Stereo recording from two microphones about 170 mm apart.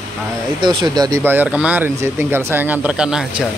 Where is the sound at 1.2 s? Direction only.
10° right (ahead or behind).